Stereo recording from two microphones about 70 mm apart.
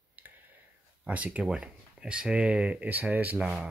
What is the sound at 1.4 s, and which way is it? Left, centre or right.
Speech, centre.